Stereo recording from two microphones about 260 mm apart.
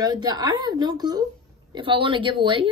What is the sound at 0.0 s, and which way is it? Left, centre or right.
Speech, centre.